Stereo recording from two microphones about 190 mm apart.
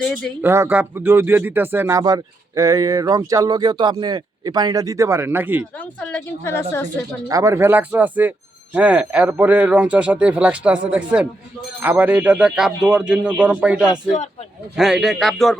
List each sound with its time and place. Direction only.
0.0 s a man's voice: 5° left (ahead or behind)
0.4 s speech: 10° right (ahead or behind)
5.7 s a woman's voice: 5° left (ahead or behind)
7.3 s a man's voice: 15° right (ahead or behind); by 15.5 s centre (ahead or behind)